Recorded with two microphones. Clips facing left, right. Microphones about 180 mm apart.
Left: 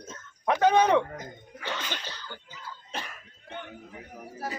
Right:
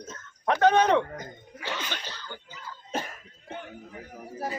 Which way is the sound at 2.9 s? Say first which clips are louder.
Right 7 dB; 40° right (ahead or behind).